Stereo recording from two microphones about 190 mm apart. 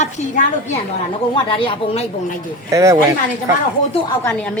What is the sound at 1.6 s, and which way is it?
Speech, 30° left (ahead or behind).